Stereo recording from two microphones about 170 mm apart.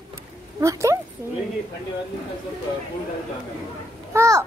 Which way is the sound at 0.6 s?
15° right (ahead or behind).